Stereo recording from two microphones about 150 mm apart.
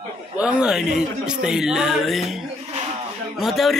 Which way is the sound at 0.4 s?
5° right (ahead or behind).